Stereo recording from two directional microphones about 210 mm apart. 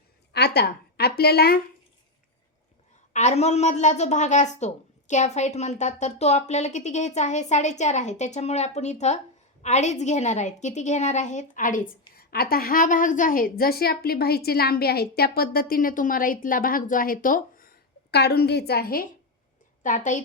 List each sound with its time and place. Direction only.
0.3 s a woman's voice: 50° left (ahead or behind)
3.1 s a woman's voice: 35° left (ahead or behind)